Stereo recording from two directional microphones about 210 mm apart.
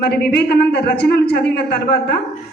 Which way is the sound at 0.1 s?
50° left (ahead or behind).